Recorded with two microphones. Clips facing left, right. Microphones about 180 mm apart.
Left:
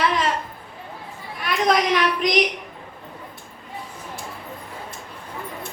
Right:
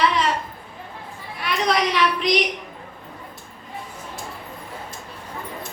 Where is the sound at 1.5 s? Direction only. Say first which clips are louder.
Left 2 dB; 45° left (ahead or behind).